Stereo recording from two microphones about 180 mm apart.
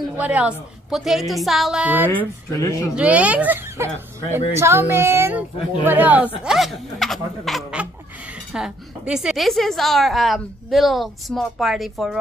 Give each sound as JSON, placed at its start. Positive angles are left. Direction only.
{"t": 0.1, "sound": "a woman's voice", "side_deg": -10}
{"t": 2.0, "sound": "speech", "side_deg": 15}
{"t": 3.0, "sound": "a woman's voice", "side_deg": -10}